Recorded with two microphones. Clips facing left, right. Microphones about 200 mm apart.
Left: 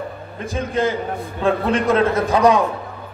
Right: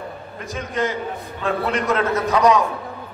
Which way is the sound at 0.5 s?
30° left (ahead or behind).